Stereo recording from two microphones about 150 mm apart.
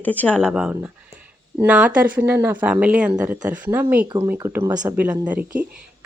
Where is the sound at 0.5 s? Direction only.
10° right (ahead or behind).